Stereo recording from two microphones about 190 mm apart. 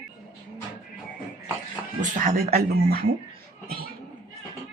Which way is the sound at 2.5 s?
55° right (ahead or behind).